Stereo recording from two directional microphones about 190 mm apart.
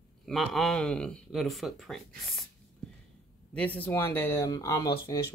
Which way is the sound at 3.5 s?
5° left (ahead or behind).